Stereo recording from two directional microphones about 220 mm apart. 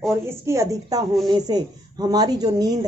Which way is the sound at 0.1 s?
10° right (ahead or behind).